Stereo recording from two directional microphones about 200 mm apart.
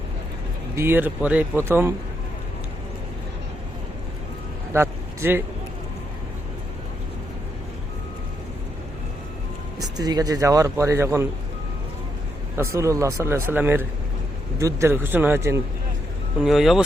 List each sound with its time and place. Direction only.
0.8 s speech: 10° right (ahead or behind)
4.7 s vehicle: 10° right (ahead or behind)
9.8 s speech: 20° right (ahead or behind)
12.5 s speech: 15° right (ahead or behind)
16.4 s speech: centre (ahead or behind)